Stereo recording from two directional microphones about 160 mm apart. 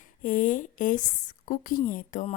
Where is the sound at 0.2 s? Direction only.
55° left (ahead or behind).